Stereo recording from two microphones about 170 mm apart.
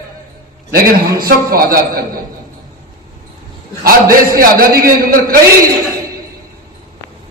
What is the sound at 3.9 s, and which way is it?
A man's voice, 60° right (ahead or behind).